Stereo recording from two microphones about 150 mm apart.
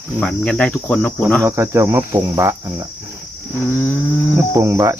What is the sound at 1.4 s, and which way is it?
Cricket, 20° right (ahead or behind).